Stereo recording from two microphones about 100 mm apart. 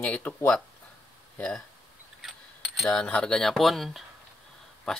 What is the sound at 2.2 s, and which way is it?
Mechanisms, centre (ahead or behind).